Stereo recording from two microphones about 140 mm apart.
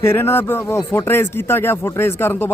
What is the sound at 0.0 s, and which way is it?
Speech, 15° left (ahead or behind).